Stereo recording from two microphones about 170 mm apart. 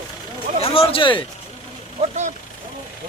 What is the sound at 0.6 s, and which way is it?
Speech, 35° left (ahead or behind).